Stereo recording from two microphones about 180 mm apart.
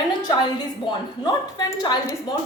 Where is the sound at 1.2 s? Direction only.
20° left (ahead or behind).